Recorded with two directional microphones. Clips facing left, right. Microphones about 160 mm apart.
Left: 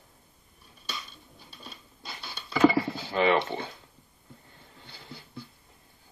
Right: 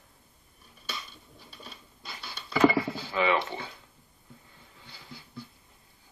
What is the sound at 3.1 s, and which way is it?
Speech, 35° left (ahead or behind).